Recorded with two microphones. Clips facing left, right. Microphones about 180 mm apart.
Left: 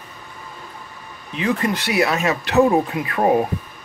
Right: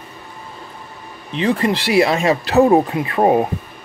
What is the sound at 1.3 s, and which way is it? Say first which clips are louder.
Speech: right 4 dB; 30° right (ahead or behind).